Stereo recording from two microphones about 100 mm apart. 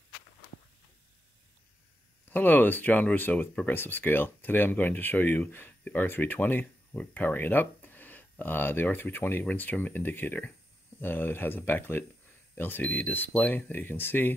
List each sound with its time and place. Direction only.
2.3 s speech: 20° left (ahead or behind)